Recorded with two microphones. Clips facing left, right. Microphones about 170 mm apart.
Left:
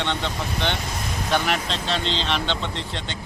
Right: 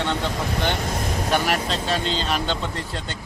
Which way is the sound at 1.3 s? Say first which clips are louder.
Even; 5° right (ahead or behind).